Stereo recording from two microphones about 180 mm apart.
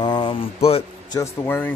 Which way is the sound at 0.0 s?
25° left (ahead or behind).